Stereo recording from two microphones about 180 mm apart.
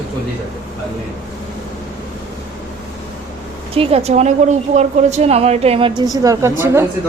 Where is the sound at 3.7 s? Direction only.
35° right (ahead or behind); by 6.9 s 15° right (ahead or behind).